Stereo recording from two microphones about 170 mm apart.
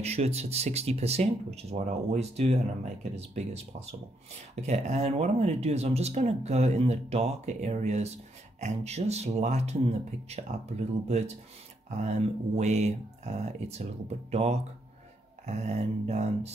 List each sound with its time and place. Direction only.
0.0 s speech: 40° right (ahead or behind)
4.6 s speech: 40° right (ahead or behind)